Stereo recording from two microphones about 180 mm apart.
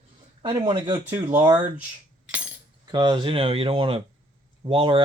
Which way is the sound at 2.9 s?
25° right (ahead or behind).